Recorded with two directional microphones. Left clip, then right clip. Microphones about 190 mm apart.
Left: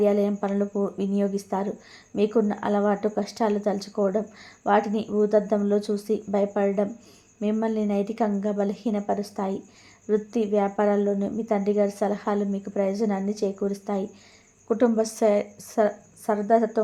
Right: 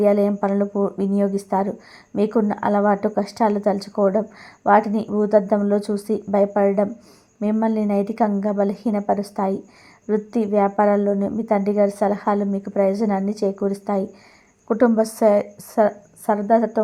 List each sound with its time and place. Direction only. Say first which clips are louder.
0.0 s speech: right 5 dB; 20° right (ahead or behind)